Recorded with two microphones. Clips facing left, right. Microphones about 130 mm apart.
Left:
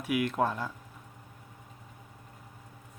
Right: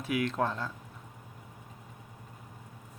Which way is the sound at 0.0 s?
10° left (ahead or behind).